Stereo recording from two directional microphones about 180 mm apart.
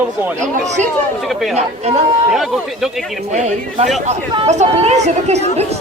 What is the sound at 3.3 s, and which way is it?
Speech, 40° right (ahead or behind).